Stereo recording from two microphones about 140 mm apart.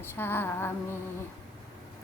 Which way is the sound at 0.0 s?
15° left (ahead or behind).